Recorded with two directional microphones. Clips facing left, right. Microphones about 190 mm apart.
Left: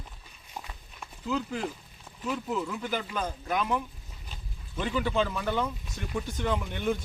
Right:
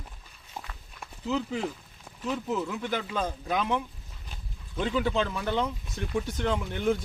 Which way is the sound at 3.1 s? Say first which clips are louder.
Right 2 dB; 20° right (ahead or behind).